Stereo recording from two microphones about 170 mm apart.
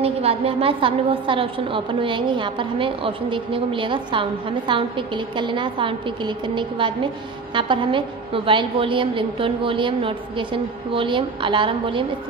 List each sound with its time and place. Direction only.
0.0 s a woman's voice: 35° right (ahead or behind)